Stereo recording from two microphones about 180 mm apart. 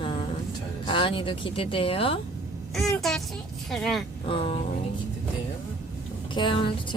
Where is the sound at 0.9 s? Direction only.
30° left (ahead or behind).